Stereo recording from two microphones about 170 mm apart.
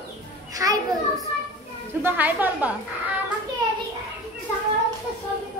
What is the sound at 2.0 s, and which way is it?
Speech, 10° right (ahead or behind).